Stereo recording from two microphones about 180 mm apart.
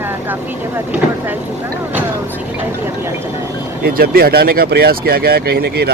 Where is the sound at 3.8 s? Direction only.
60° right (ahead or behind).